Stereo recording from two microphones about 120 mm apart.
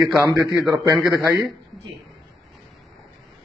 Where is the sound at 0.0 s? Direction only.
Centre (ahead or behind).